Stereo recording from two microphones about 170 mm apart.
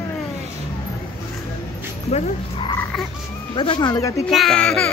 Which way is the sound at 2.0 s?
40° left (ahead or behind).